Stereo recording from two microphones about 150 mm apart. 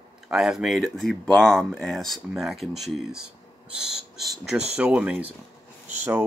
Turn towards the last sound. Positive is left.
turn(degrees=-20)  # may be behind; listen again after turning